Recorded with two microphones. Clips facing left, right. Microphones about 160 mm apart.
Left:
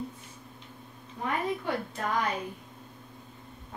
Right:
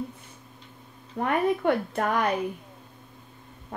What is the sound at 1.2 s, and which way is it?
A woman's voice, 60° right (ahead or behind).